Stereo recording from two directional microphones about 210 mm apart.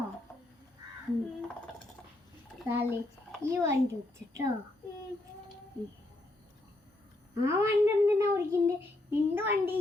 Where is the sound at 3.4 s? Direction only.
10° right (ahead or behind).